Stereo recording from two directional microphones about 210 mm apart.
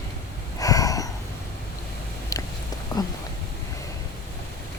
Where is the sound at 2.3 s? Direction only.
15° left (ahead or behind).